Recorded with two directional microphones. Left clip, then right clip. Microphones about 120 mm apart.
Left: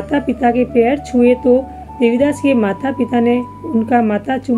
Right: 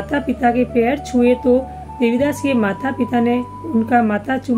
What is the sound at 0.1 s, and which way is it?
Speech, 30° left (ahead or behind).